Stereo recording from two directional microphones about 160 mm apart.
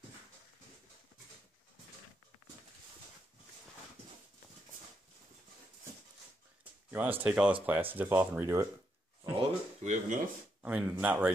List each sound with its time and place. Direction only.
6.9 s speech: 10° right (ahead or behind)
9.4 s a sound: 45° right (ahead or behind)
10.6 s speech: 10° right (ahead or behind)